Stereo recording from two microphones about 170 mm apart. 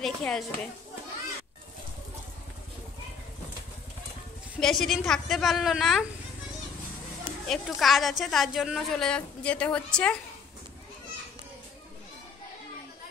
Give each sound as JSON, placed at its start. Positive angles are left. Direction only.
{"t": 0.0, "sound": "a woman's voice", "side_deg": 0}
{"t": 4.6, "sound": "a woman's voice", "side_deg": 0}
{"t": 7.4, "sound": "a woman's voice", "side_deg": 5}